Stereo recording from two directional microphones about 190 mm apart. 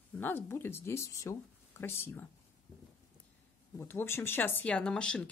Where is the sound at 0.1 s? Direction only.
10° left (ahead or behind).